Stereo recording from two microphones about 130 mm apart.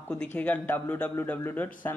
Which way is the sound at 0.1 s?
10° left (ahead or behind).